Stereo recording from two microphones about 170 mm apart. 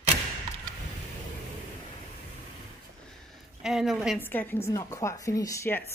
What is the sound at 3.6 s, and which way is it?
Speech, 5° right (ahead or behind).